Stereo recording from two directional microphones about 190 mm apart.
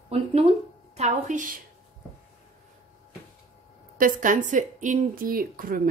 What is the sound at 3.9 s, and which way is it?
Speech, 45° right (ahead or behind).